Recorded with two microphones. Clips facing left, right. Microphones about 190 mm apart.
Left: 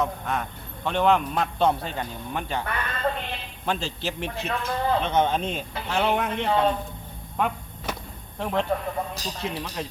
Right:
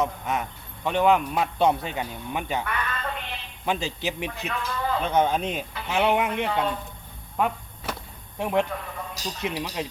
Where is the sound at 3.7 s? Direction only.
15° right (ahead or behind).